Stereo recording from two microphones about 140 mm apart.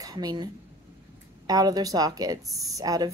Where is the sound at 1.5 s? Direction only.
25° right (ahead or behind).